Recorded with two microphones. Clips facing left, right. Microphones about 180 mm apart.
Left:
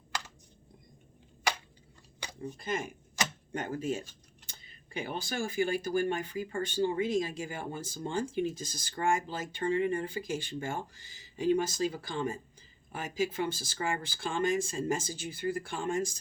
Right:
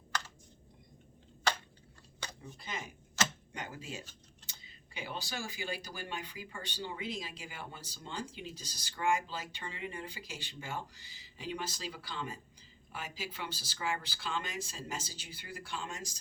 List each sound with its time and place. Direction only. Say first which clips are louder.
1.5 s a sound: left 1 dB; 10° left (ahead or behind)
2.4 s speech: left 11 dB; 50° left (ahead or behind)
3.2 s tick-tock: even; 15° left (ahead or behind)
3.5 s speech: left 10 dB; 50° left (ahead or behind)